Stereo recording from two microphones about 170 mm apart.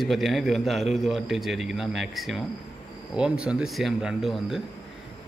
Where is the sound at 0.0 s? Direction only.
Centre (ahead or behind).